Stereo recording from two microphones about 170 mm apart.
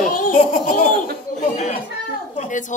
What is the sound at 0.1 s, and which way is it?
Baby laughter, 55° left (ahead or behind).